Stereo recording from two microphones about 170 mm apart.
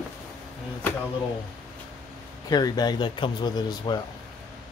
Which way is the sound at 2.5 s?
25° left (ahead or behind).